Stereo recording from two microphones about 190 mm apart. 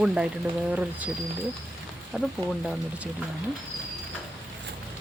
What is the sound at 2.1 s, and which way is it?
Speech, 5° right (ahead or behind).